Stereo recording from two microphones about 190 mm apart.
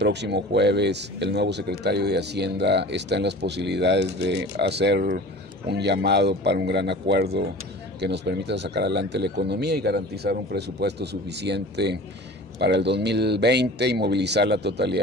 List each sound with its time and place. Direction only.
0.0 s speech: 65° right (ahead or behind)